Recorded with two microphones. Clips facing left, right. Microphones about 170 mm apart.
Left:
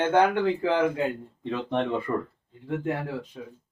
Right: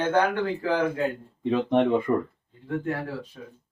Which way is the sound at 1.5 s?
15° right (ahead or behind).